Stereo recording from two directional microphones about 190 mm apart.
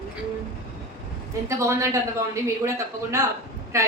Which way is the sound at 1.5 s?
15° right (ahead or behind).